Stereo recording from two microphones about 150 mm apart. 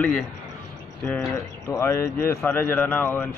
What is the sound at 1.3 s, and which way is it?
A man's voice, 20° left (ahead or behind).